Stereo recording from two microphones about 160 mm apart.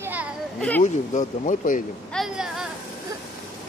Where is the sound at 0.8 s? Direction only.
50° left (ahead or behind).